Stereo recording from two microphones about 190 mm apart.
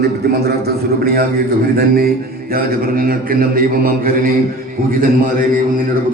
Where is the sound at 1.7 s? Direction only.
50° right (ahead or behind).